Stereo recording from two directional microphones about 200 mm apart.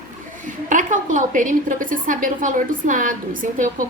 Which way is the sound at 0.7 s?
40° right (ahead or behind).